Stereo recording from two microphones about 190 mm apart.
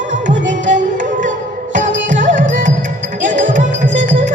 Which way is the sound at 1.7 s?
45° right (ahead or behind).